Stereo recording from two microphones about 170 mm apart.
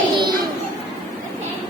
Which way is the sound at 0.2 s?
25° right (ahead or behind).